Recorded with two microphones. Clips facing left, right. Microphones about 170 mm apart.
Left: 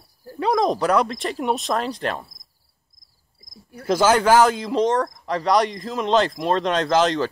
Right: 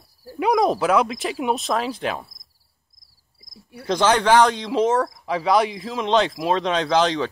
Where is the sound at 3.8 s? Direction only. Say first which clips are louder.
Left 1 dB; 5° left (ahead or behind).